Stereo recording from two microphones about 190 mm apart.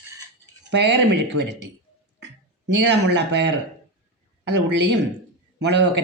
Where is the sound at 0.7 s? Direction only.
65° right (ahead or behind).